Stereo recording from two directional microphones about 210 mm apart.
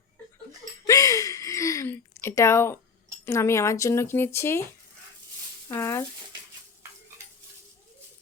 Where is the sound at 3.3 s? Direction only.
15° left (ahead or behind).